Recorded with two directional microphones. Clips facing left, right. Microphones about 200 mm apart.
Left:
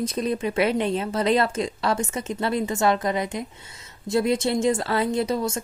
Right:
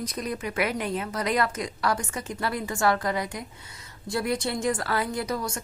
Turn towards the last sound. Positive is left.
turn(degrees=25)  # may be behind; listen again after turning